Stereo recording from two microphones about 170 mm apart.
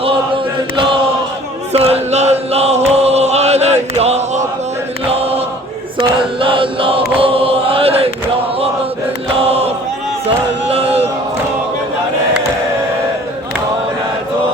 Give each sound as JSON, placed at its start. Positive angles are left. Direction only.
{"t": 1.7, "sound": "chant", "side_deg": -35}
{"t": 6.0, "sound": "chant", "side_deg": -30}
{"t": 7.2, "sound": "mantra", "side_deg": -35}
{"t": 9.5, "sound": "chant", "side_deg": -35}
{"t": 10.7, "sound": "crowd", "side_deg": -35}